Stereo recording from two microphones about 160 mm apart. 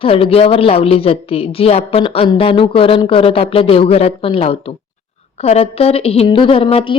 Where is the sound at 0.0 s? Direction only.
35° left (ahead or behind).